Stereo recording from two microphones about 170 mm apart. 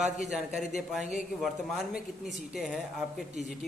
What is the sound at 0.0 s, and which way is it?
Speech, 5° right (ahead or behind).